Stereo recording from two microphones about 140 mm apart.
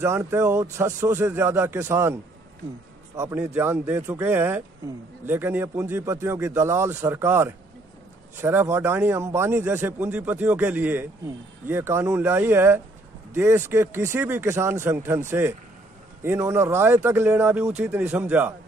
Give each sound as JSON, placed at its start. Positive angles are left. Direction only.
{"t": 0.0, "sound": "a man's voice", "side_deg": -20}
{"t": 3.2, "sound": "a man's voice", "side_deg": -15}